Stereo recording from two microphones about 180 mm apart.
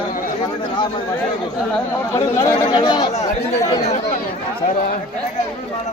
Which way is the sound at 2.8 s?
25° left (ahead or behind).